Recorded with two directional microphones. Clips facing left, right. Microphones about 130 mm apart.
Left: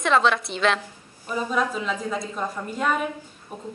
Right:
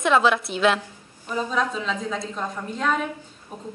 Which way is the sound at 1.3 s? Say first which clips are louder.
Even; 10° left (ahead or behind).